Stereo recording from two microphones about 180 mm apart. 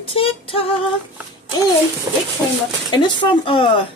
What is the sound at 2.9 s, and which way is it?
Speech, 25° left (ahead or behind).